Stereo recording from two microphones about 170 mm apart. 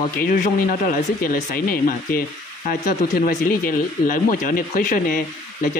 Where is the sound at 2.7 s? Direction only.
50° left (ahead or behind).